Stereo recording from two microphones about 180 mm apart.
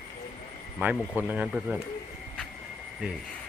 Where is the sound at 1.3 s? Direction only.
10° right (ahead or behind).